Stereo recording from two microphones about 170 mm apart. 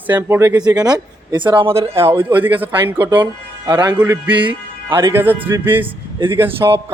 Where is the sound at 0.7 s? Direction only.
20° right (ahead or behind).